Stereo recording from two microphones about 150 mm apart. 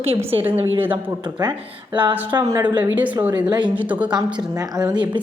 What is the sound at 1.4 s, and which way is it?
Speech, 30° right (ahead or behind).